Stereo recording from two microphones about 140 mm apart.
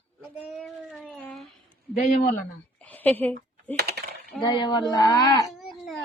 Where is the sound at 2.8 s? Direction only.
10° left (ahead or behind).